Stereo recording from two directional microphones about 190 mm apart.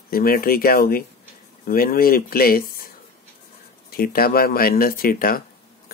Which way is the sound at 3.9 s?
50° left (ahead or behind).